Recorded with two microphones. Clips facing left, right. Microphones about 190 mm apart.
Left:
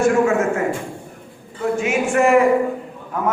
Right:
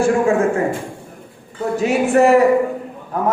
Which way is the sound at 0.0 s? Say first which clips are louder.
Right 1 dB; 30° right (ahead or behind).